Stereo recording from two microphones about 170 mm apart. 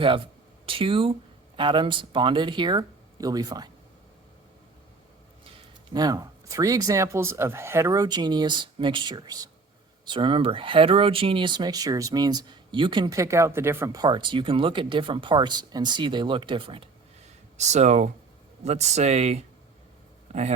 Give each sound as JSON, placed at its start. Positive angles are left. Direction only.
{"t": 0.6, "sound": "speech", "side_deg": -30}
{"t": 5.9, "sound": "speech", "side_deg": -25}
{"t": 17.6, "sound": "speech", "side_deg": -45}